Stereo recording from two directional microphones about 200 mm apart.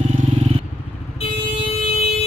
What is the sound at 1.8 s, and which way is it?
Siren, 30° left (ahead or behind).